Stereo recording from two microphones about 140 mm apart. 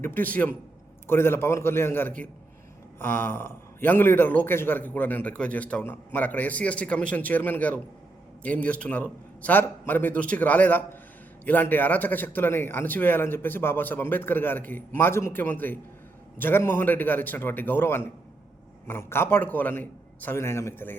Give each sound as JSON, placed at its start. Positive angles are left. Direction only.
{"t": 0.0, "sound": "a man's voice", "side_deg": 15}